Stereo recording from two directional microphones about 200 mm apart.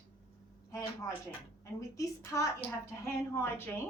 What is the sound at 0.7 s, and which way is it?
A woman's voice, 15° left (ahead or behind).